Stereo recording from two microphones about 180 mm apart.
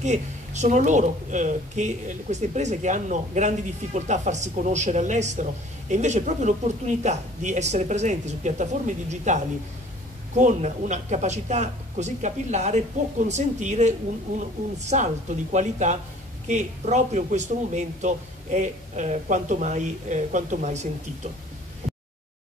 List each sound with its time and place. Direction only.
0.0 s a woman's voice: 40° right (ahead or behind)